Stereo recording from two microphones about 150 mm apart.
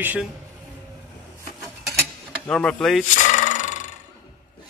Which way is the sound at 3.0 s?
55° left (ahead or behind).